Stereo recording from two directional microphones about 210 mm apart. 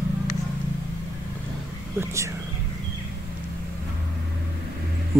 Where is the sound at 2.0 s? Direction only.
15° right (ahead or behind).